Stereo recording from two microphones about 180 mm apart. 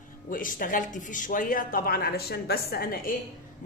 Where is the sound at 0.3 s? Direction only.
50° left (ahead or behind).